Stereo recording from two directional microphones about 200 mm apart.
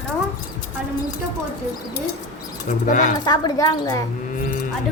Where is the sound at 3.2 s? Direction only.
20° left (ahead or behind).